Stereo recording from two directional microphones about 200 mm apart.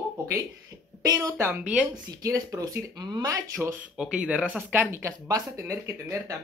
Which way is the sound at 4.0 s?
5° right (ahead or behind).